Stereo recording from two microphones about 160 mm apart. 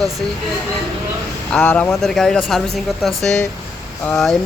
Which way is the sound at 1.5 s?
10° left (ahead or behind).